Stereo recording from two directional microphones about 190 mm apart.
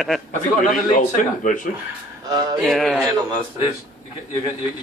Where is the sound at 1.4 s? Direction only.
40° left (ahead or behind).